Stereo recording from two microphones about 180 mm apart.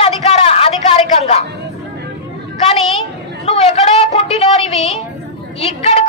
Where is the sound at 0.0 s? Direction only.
35° left (ahead or behind).